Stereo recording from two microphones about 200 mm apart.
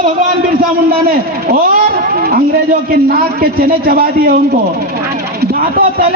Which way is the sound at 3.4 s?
50° right (ahead or behind).